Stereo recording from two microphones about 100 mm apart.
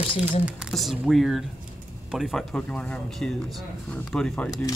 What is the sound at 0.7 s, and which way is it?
Speech, centre (ahead or behind).